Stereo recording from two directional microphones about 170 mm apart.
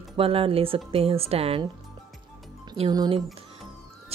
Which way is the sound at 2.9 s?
25° right (ahead or behind).